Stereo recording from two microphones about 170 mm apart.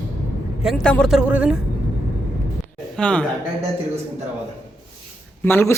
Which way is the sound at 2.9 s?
5° left (ahead or behind).